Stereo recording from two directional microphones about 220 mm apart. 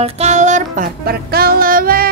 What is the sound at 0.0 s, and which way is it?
Music, 30° right (ahead or behind).